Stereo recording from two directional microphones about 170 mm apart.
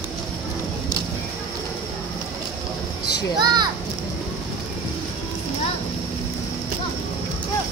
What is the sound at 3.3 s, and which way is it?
Speech, 25° right (ahead or behind).